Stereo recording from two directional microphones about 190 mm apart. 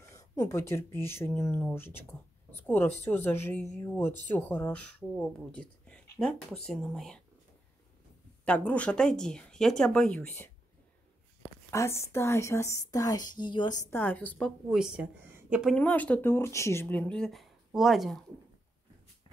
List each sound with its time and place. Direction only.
0.1 s a sound: 15° left (ahead or behind)
1.0 s speech: 15° left (ahead or behind)
8.5 s speech: 5° left (ahead or behind)
11.7 s speech: 15° left (ahead or behind)
13.8 s speech: 10° left (ahead or behind)
14.7 s speech: 5° right (ahead or behind)
15.7 s speech: 5° left (ahead or behind)